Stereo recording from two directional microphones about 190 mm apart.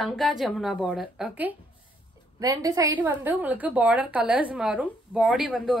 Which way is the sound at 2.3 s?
20° right (ahead or behind).